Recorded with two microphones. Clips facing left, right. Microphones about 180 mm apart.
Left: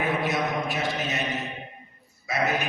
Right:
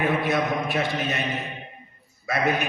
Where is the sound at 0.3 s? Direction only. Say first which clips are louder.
Right 3 dB; 55° right (ahead or behind).